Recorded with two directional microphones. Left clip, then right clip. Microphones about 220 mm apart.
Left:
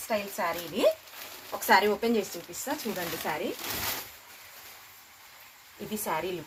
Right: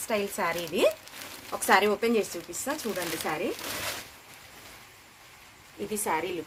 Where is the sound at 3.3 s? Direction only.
45° right (ahead or behind).